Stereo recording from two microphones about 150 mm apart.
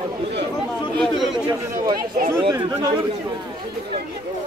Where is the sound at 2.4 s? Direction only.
25° right (ahead or behind).